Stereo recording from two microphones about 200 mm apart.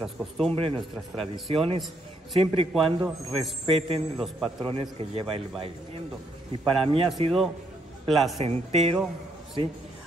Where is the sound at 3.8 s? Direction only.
30° right (ahead or behind).